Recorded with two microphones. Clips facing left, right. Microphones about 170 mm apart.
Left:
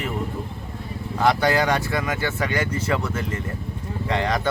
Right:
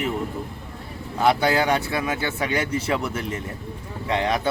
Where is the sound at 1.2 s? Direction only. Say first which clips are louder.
Even; 10° right (ahead or behind).